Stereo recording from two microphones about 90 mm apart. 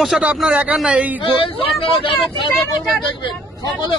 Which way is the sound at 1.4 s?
90° left.